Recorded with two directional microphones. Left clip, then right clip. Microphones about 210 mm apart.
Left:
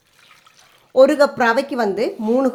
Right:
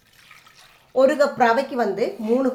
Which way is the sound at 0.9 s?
50° left (ahead or behind).